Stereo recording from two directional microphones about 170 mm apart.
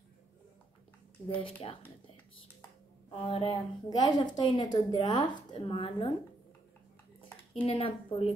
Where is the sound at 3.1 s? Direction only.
35° left (ahead or behind).